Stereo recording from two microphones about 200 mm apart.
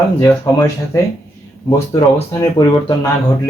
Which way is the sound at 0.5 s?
20° left (ahead or behind).